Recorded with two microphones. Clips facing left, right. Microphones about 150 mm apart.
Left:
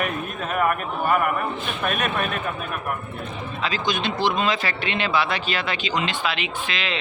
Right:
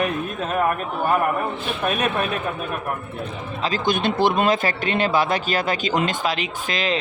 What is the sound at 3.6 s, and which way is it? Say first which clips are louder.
A man's voice: right 4 dB; 50° right (ahead or behind).